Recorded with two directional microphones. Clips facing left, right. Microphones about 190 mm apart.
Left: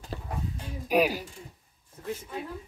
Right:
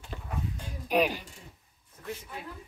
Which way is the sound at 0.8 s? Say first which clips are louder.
Left 2 dB; 10° left (ahead or behind).